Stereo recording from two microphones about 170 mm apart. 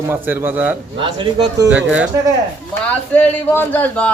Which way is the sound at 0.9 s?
30° right (ahead or behind).